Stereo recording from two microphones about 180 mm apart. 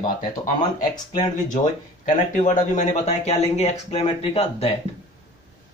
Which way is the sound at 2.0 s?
45° left (ahead or behind).